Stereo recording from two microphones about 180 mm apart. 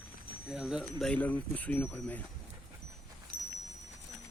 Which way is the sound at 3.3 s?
50° right (ahead or behind).